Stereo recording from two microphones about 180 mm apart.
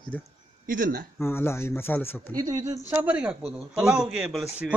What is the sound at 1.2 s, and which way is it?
Speech, 15° left (ahead or behind).